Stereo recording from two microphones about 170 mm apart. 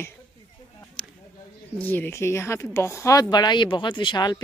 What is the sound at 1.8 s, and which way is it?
Speech, 10° left (ahead or behind).